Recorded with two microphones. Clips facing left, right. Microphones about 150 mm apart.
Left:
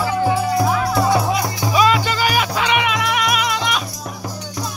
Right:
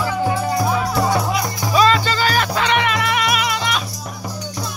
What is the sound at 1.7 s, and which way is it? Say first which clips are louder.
Music: right 1 dB; 10° left (ahead or behind).